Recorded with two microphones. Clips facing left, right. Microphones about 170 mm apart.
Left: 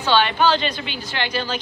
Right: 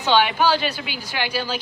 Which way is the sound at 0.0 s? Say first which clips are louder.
Even; 15° right (ahead or behind).